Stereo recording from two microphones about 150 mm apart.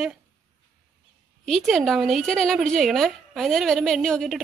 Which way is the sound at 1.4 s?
Centre (ahead or behind).